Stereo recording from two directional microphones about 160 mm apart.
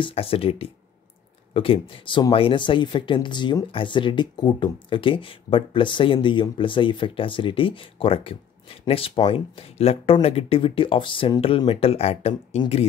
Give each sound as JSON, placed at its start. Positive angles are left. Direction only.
{"t": 0.0, "sound": "speech", "side_deg": 35}